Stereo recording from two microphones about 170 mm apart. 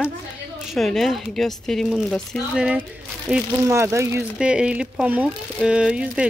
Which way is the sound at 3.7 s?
15° right (ahead or behind).